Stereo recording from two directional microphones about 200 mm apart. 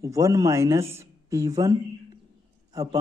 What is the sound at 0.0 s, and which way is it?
A man's voice, 15° right (ahead or behind).